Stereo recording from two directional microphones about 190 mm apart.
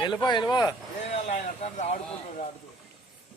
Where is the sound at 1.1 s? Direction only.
40° left (ahead or behind).